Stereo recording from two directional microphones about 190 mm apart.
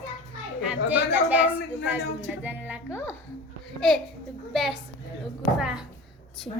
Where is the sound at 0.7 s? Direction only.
10° right (ahead or behind).